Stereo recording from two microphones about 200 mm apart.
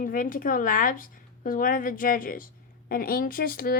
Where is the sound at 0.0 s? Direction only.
45° left (ahead or behind).